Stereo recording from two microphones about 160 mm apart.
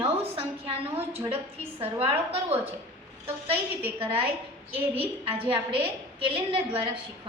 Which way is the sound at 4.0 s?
35° right (ahead or behind).